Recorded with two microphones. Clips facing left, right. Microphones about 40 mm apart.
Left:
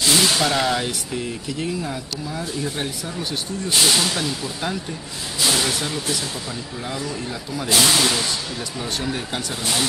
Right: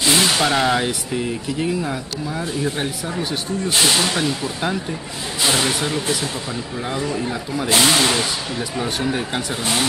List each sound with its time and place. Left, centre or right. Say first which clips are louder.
0.0 s speech: right 2 dB; centre